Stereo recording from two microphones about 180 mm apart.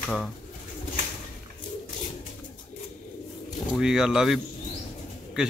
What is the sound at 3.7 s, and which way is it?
Speech, 5° right (ahead or behind).